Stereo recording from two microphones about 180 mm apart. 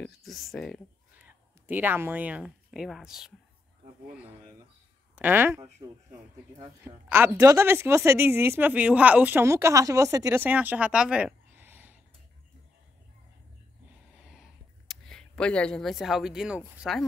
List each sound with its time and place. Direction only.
0.0 s speech: centre (ahead or behind)
1.1 s speech: 10° right (ahead or behind)
5.1 s speech: 10° right (ahead or behind)
5.8 s speech: 25° right (ahead or behind)
6.8 s speech: 10° right (ahead or behind)
14.2 s a sound: centre (ahead or behind)